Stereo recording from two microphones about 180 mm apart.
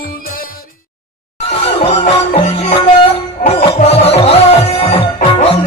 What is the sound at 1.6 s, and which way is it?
Music, 35° left (ahead or behind).